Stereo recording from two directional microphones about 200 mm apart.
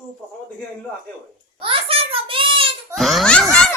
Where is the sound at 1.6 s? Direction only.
25° right (ahead or behind).